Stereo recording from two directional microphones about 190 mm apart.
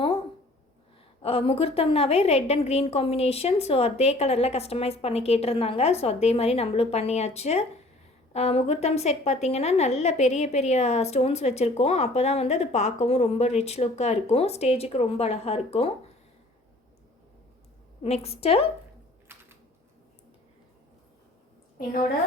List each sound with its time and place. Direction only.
1.2 s a woman's voice: 30° left (ahead or behind)
18.0 s a woman's voice: 35° left (ahead or behind)
19.3 s typing: 15° right (ahead or behind)